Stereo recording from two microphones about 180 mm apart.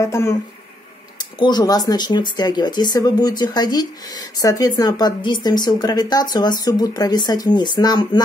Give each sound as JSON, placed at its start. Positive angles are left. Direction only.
{"t": 0.0, "sound": "speech", "side_deg": 15}
{"t": 1.4, "sound": "speech", "side_deg": 20}